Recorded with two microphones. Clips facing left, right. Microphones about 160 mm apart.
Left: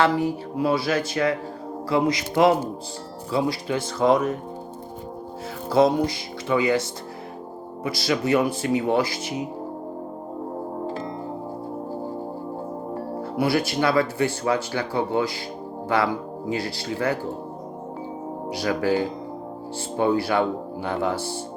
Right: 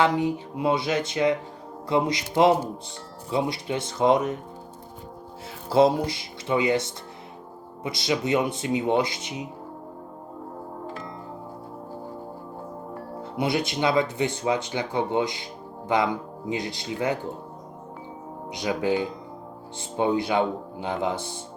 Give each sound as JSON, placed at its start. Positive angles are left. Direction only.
{"t": 0.0, "sound": "speech", "side_deg": -15}
{"t": 5.6, "sound": "speech", "side_deg": -25}
{"t": 7.9, "sound": "speech", "side_deg": -20}
{"t": 10.8, "sound": "music", "side_deg": 30}
{"t": 13.3, "sound": "speech", "side_deg": -20}
{"t": 16.5, "sound": "speech", "side_deg": -20}
{"t": 18.5, "sound": "speech", "side_deg": -15}
{"t": 20.0, "sound": "speech", "side_deg": -20}